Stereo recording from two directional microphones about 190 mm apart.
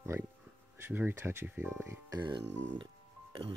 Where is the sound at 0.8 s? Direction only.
10° right (ahead or behind).